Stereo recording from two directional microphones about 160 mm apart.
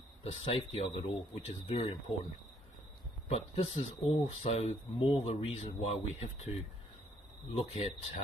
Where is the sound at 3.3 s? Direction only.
40° left (ahead or behind).